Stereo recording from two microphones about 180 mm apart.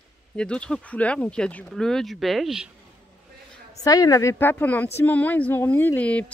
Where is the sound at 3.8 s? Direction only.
20° left (ahead or behind).